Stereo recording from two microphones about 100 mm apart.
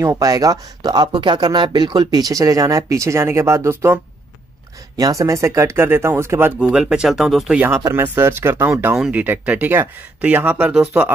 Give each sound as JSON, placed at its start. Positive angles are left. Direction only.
{"t": 0.0, "sound": "speech", "side_deg": -35}
{"t": 6.6, "sound": "speech", "side_deg": -10}
{"t": 7.5, "sound": "speech", "side_deg": -20}
{"t": 8.9, "sound": "speech", "side_deg": -10}